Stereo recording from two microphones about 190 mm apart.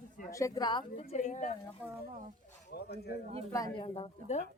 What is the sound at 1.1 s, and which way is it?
Speech, 40° left (ahead or behind).